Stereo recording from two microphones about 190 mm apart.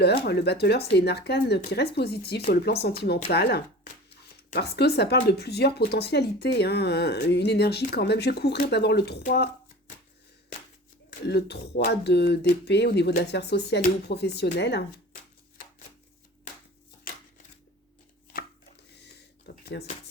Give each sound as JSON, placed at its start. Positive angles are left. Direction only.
{"t": 0.0, "sound": "speech", "side_deg": 60}
{"t": 11.3, "sound": "speech", "side_deg": 60}
{"t": 17.1, "sound": "shuffling cards", "side_deg": 50}
{"t": 19.6, "sound": "speech", "side_deg": 60}